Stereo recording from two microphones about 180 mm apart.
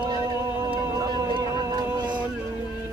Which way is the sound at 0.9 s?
20° right (ahead or behind).